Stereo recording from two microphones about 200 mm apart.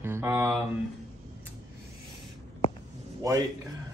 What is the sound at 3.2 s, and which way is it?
Speech, 15° right (ahead or behind).